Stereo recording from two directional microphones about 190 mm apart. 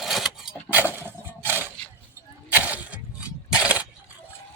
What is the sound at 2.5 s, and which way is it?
Vehicle, 10° right (ahead or behind).